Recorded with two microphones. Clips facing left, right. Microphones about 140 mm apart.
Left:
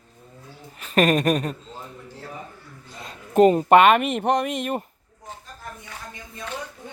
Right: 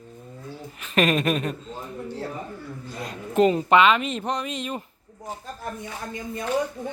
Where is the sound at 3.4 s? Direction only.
45° left (ahead or behind).